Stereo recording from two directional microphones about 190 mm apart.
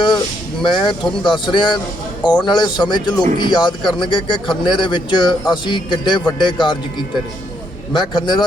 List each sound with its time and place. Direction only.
0.6 s a man's voice: 25° left (ahead or behind)
7.9 s a man's voice: 25° left (ahead or behind)